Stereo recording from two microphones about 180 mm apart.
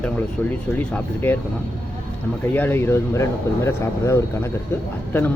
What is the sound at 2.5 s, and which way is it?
Speech, 10° left (ahead or behind).